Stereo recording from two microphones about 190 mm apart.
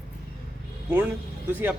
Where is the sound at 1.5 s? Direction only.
10° right (ahead or behind).